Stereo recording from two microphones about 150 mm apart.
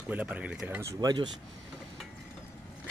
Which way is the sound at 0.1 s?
10° right (ahead or behind).